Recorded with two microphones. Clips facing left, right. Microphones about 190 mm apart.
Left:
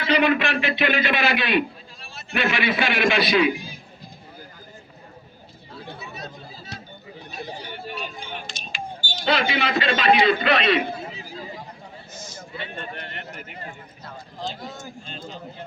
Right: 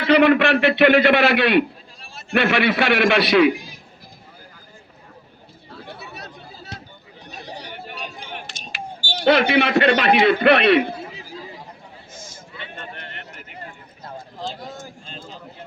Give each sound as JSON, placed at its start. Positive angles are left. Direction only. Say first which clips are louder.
{"t": 0.0, "sound": "a man's voice", "louder": "right 6 dB", "side_deg": -60}
{"t": 6.0, "sound": "chatter", "louder": "left 1 dB", "side_deg": -65}
{"t": 8.3, "sound": "speech", "louder": "even", "side_deg": -65}
{"t": 12.1, "sound": "a sound", "louder": "even", "side_deg": -50}